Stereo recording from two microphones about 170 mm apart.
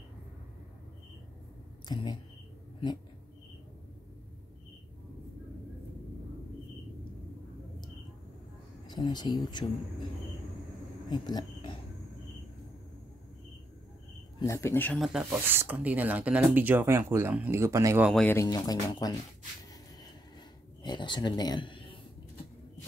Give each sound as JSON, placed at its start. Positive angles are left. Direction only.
{"t": 1.9, "sound": "speech", "side_deg": 25}
{"t": 8.8, "sound": "speech", "side_deg": 25}
{"t": 11.1, "sound": "speech", "side_deg": 25}
{"t": 14.4, "sound": "speech", "side_deg": 15}
{"t": 15.4, "sound": "speech", "side_deg": -15}
{"t": 18.1, "sound": "speech", "side_deg": 10}
{"t": 20.8, "sound": "a sound", "side_deg": 25}